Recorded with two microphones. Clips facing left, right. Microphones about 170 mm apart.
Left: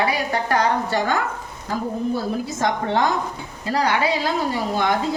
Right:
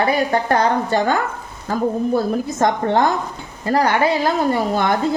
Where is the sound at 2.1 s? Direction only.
50° right (ahead or behind).